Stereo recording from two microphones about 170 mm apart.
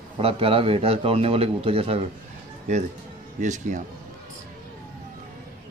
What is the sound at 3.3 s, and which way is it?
Speech, 45° right (ahead or behind).